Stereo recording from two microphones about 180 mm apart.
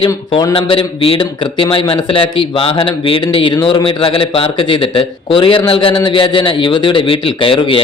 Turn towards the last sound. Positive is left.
turn(degrees=30)  # may be behind; listen again after turning